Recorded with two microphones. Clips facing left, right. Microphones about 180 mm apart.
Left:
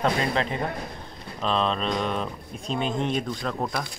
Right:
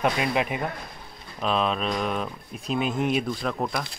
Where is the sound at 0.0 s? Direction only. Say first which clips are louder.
Even; 10° right (ahead or behind).